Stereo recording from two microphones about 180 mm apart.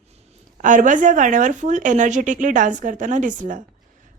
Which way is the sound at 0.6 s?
45° right (ahead or behind).